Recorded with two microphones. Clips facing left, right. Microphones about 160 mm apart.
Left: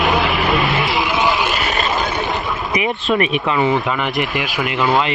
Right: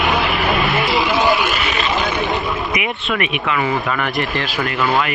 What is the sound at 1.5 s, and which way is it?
Vehicle, 40° left (ahead or behind).